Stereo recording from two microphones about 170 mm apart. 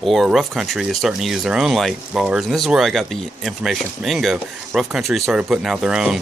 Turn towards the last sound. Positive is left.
turn(degrees=-5)  # may be behind; listen again after turning